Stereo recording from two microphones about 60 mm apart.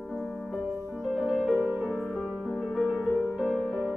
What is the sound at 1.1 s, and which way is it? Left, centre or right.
Music, centre.